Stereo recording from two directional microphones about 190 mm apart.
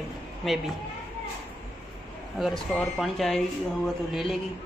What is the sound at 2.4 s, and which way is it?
Speech, centre (ahead or behind).